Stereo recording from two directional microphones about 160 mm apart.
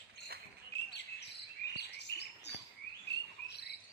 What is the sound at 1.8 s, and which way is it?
Chirp, 90° left.